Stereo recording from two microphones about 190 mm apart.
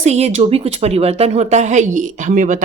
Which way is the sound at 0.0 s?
35° right (ahead or behind).